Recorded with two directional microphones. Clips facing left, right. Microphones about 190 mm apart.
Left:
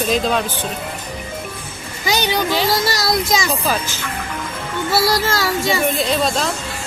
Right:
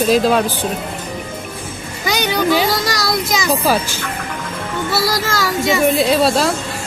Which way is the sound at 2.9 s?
25° left (ahead or behind).